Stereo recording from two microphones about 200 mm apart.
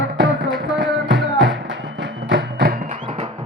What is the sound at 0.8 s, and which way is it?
Music, 60° right (ahead or behind).